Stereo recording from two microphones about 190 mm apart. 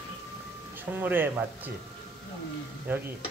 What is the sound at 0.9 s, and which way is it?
Stir, 10° right (ahead or behind).